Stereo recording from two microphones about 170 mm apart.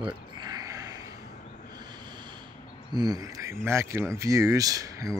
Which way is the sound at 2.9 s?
25° right (ahead or behind).